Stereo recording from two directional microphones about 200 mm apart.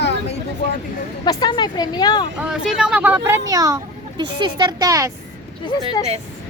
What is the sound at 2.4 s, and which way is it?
Speech, 5° right (ahead or behind).